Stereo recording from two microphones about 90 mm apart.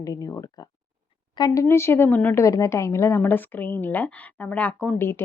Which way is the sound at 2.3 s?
35° left (ahead or behind).